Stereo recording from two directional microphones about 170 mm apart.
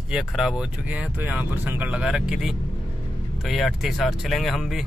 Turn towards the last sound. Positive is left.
turn(degrees=0)  # may be behind; listen again after turning